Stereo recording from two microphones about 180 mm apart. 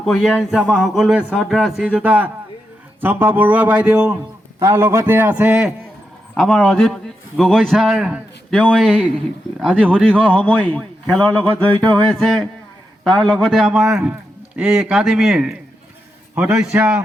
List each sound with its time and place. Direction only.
0.0 s a man's voice: centre (ahead or behind)
6.3 s a man's voice: 5° left (ahead or behind)
11.6 s a sound: 10° left (ahead or behind)
13.1 s a man's voice: centre (ahead or behind)